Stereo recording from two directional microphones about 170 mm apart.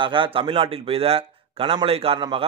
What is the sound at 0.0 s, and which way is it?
A man's voice, 30° right (ahead or behind).